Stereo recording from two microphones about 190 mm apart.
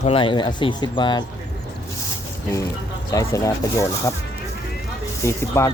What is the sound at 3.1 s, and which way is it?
Speech, 15° left (ahead or behind).